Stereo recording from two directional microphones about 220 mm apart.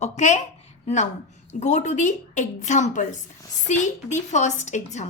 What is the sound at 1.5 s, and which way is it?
A woman's voice, 30° left (ahead or behind).